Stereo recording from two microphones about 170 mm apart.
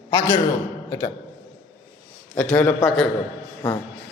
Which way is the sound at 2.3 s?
10° left (ahead or behind).